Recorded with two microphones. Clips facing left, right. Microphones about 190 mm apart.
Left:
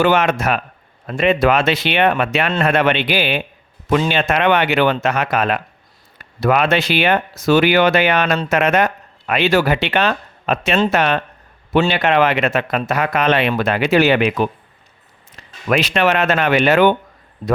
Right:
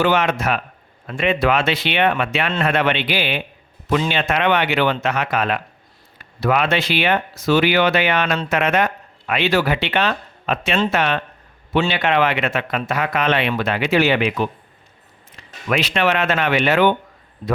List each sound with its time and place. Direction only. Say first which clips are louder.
0.0 s speech: left 3 dB; 50° left (ahead or behind)
15.7 s speech: left 3 dB; 45° left (ahead or behind)